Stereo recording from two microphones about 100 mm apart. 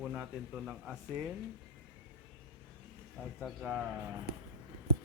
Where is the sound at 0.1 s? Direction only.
10° right (ahead or behind).